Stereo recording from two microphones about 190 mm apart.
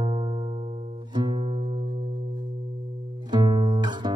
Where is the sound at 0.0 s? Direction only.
25° right (ahead or behind).